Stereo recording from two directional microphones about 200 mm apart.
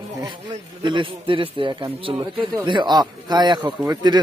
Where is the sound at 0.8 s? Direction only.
25° right (ahead or behind).